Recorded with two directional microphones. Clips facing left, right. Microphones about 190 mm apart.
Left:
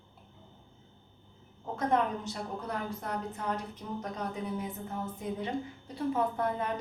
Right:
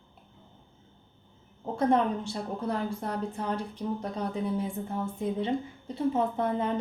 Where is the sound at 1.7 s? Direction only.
30° right (ahead or behind).